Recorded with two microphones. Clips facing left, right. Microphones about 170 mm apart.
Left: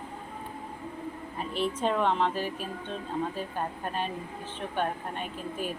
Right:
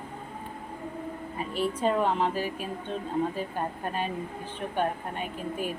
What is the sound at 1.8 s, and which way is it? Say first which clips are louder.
Speech: right 1 dB; 10° right (ahead or behind).